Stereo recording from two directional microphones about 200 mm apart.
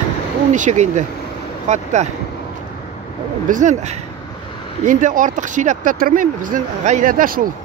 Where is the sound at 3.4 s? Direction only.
40° right (ahead or behind).